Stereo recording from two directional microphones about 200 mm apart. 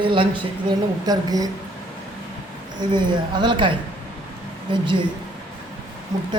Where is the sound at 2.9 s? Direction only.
25° right (ahead or behind).